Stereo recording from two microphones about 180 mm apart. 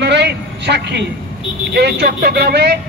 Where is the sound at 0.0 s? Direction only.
70° right (ahead or behind).